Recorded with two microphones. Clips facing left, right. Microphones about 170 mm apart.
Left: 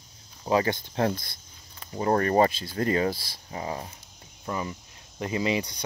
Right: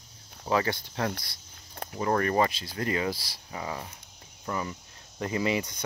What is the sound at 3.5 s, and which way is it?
Speech, 30° left (ahead or behind).